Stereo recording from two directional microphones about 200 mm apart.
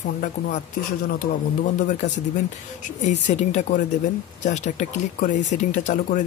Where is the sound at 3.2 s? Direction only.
35° left (ahead or behind).